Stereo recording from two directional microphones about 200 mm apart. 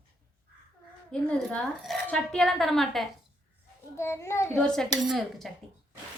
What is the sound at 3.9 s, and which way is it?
A child's voice, 15° left (ahead or behind).